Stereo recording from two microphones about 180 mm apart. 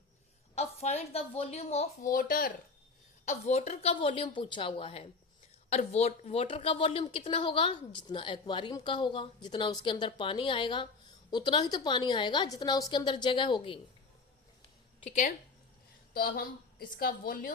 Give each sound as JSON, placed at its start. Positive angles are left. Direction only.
{"t": 0.5, "sound": "speech", "side_deg": 35}
{"t": 3.2, "sound": "a woman's voice", "side_deg": 35}
{"t": 15.0, "sound": "a woman's voice", "side_deg": 40}
{"t": 16.1, "sound": "a woman's voice", "side_deg": 55}